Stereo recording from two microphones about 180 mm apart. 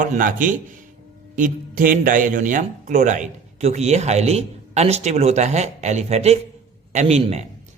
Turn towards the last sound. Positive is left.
turn(degrees=-35)  # may be behind; listen again after turning